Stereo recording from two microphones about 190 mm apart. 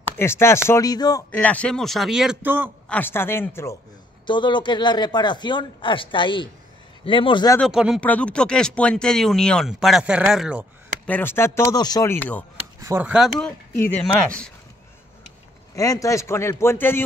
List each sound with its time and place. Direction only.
0.2 s speech: 15° left (ahead or behind)
1.3 s speech: 5° left (ahead or behind); by 2.7 s 10° right (ahead or behind)
2.9 s speech: 10° left (ahead or behind)
4.3 s speech: 25° left (ahead or behind)
7.5 s speech: centre (ahead or behind)
11.1 s speech: 10° left (ahead or behind)
12.8 s speech: 10° right (ahead or behind)
13.4 s speech: 10° left (ahead or behind)
15.7 s speech: 20° left (ahead or behind)